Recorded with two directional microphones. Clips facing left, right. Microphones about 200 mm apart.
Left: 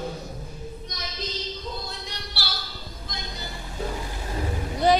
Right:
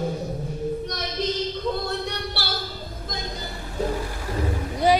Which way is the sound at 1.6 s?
60° right (ahead or behind).